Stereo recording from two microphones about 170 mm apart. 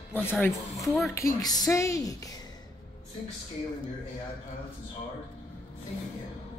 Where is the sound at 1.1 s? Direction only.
20° left (ahead or behind).